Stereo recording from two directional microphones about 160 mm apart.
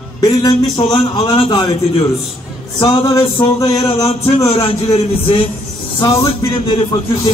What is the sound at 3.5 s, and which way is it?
Music, 20° left (ahead or behind).